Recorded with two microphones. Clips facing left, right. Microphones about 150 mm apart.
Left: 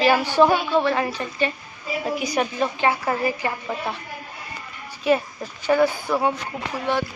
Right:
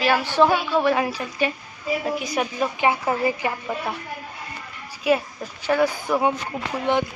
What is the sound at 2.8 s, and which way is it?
Speech, 20° right (ahead or behind).